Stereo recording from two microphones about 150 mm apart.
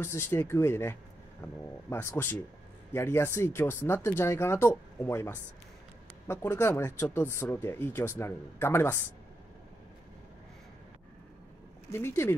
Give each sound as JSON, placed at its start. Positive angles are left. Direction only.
{"t": 0.0, "sound": "speech", "side_deg": 15}
{"t": 11.9, "sound": "speech", "side_deg": 15}